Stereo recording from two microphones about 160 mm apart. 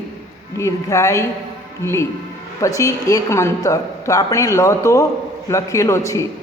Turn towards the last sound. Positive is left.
turn(degrees=20)  # may be behind; listen again after turning